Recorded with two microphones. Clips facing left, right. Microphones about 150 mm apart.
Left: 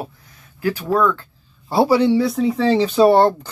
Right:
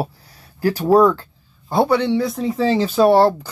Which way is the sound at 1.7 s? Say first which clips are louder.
Left 2 dB; 5° left (ahead or behind).